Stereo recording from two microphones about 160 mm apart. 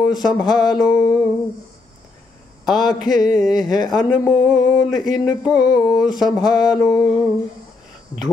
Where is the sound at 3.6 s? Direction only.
25° left (ahead or behind).